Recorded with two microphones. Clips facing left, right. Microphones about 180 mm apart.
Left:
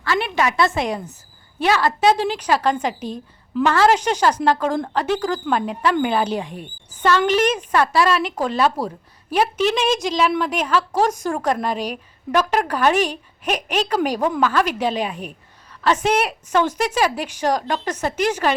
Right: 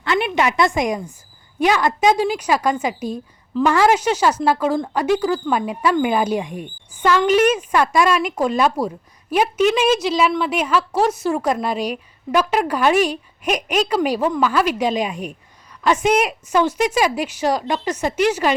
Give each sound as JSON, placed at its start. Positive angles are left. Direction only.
{"t": 0.0, "sound": "a woman's voice", "side_deg": -20}